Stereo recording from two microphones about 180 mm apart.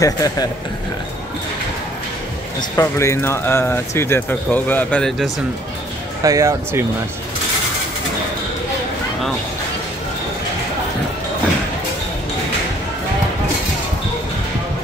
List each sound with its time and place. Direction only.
0.0 s speech: 20° left (ahead or behind)
2.7 s speech: 15° left (ahead or behind)
6.2 s speech: 20° right (ahead or behind)